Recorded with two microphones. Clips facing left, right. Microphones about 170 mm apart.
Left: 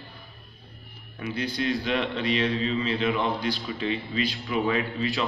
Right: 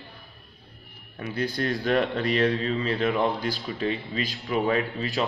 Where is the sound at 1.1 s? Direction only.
40° right (ahead or behind).